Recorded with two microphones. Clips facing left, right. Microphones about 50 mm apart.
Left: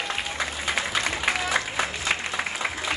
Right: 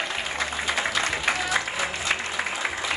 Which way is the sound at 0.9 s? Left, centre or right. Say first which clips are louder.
Even; centre.